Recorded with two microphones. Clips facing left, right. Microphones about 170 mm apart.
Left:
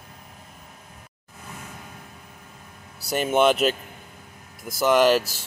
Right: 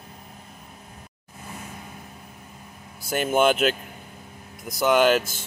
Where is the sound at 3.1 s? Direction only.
Centre (ahead or behind).